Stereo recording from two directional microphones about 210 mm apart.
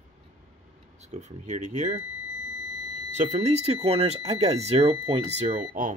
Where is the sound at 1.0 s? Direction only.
35° right (ahead or behind).